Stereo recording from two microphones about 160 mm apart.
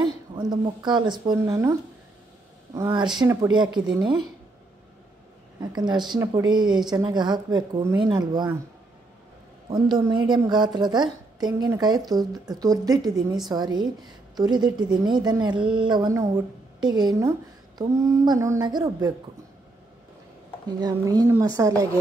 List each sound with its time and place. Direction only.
0.4 s a woman's voice: 30° right (ahead or behind)
5.6 s a woman's voice: 25° right (ahead or behind)
9.7 s a woman's voice: 30° right (ahead or behind)
20.8 s a woman's voice: 25° right (ahead or behind)